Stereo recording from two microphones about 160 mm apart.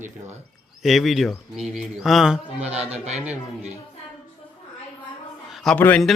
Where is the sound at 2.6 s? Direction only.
40° right (ahead or behind).